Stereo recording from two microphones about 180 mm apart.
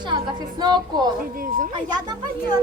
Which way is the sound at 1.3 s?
50° right (ahead or behind).